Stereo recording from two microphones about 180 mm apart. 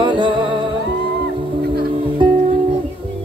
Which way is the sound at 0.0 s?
25° right (ahead or behind).